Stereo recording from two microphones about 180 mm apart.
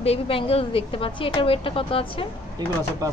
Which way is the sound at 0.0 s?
30° left (ahead or behind).